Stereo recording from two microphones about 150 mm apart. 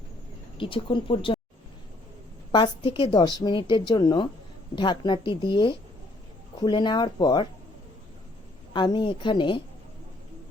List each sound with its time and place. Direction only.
0.5 s a woman's voice: 35° left (ahead or behind)
2.5 s a woman's voice: 30° left (ahead or behind)
8.7 s a woman's voice: 30° left (ahead or behind)